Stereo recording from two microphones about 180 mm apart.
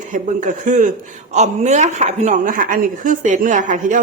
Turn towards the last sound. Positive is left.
turn(degrees=-45)  # may be behind; listen again after turning